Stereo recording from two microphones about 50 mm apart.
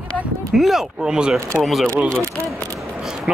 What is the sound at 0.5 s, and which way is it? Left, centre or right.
Speech, centre.